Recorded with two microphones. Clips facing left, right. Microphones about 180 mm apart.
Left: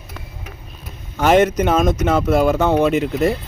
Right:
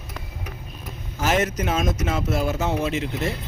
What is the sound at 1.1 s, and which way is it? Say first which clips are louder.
Speech: left 9 dB; 60° left (ahead or behind).